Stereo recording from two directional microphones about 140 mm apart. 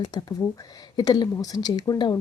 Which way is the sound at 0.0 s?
30° left (ahead or behind).